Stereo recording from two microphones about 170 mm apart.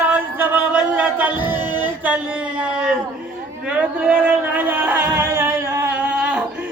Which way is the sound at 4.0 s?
10° right (ahead or behind).